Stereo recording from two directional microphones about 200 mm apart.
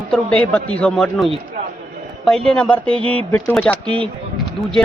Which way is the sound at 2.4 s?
5° left (ahead or behind).